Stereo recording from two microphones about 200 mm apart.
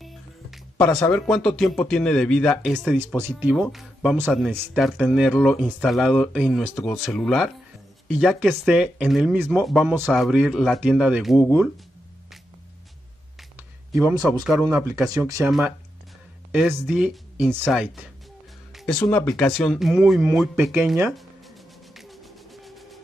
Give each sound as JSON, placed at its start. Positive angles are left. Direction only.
{"t": 0.0, "sound": "speech", "side_deg": 0}
{"t": 3.2, "sound": "speech", "side_deg": -10}
{"t": 14.0, "sound": "speech", "side_deg": -20}
{"t": 16.5, "sound": "speech", "side_deg": 0}
{"t": 18.7, "sound": "music", "side_deg": 0}